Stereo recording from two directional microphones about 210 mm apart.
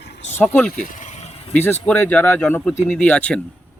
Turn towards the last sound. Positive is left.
turn(degrees=5)  # may be behind; listen again after turning